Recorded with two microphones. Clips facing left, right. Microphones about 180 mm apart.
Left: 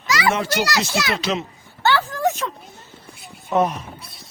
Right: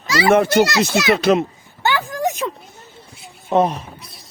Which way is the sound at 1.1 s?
55° right (ahead or behind).